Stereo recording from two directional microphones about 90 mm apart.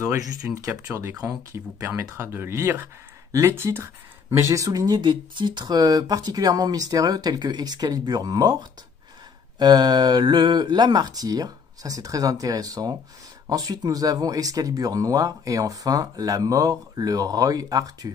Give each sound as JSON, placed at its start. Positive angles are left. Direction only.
{"t": 0.0, "sound": "speech", "side_deg": -40}
{"t": 1.5, "sound": "speech", "side_deg": -30}